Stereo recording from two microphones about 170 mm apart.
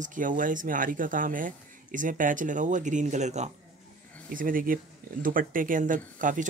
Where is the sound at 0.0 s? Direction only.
50° right (ahead or behind).